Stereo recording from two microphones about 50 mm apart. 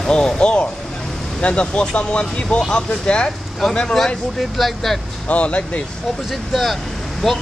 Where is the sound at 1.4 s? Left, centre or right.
Left.